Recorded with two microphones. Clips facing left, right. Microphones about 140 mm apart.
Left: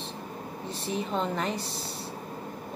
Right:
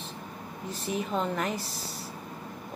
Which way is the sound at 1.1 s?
5° right (ahead or behind).